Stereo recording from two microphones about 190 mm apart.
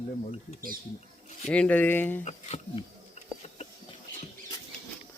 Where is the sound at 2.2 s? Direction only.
35° left (ahead or behind).